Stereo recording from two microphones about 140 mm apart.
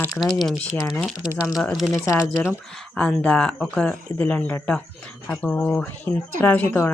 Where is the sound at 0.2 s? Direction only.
Centre (ahead or behind).